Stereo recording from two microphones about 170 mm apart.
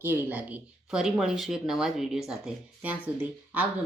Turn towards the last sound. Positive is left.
turn(degrees=-10)  # may be behind; listen again after turning